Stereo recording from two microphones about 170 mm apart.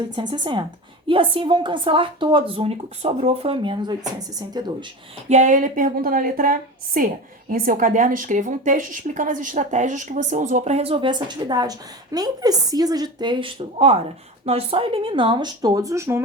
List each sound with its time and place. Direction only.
0.2 s speech: 25° right (ahead or behind)
5.3 s a woman's voice: 45° right (ahead or behind); by 16.2 s 15° right (ahead or behind)